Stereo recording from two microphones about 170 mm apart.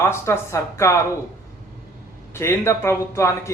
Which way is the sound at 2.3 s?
15° left (ahead or behind).